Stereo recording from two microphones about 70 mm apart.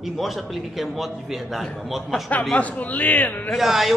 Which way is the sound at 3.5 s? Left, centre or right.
Centre.